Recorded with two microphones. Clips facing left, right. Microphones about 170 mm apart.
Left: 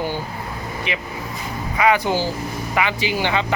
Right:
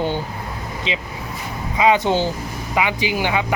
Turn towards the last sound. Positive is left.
turn(degrees=-15)  # may be behind; listen again after turning